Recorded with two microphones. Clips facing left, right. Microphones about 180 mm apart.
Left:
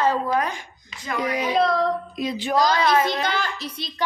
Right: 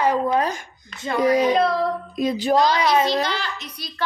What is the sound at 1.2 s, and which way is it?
Speech, 40° right (ahead or behind).